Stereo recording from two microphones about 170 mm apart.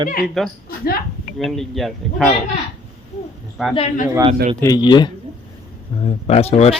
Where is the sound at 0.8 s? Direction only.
60° left (ahead or behind).